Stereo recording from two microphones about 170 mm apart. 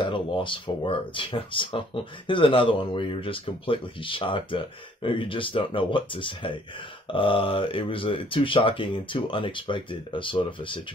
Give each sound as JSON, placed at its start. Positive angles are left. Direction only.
{"t": 0.0, "sound": "speech", "side_deg": 30}